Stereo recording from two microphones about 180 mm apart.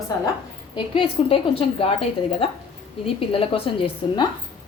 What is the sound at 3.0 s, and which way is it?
A woman's voice, 30° left (ahead or behind).